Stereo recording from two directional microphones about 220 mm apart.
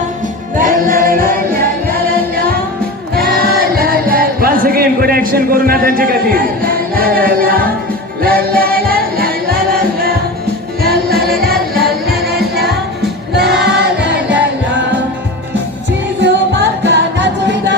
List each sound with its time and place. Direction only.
0.6 s music: 40° right (ahead or behind)
3.2 s music: 45° right (ahead or behind)
13.3 s choir: 50° right (ahead or behind)
16.2 s music: 50° right (ahead or behind)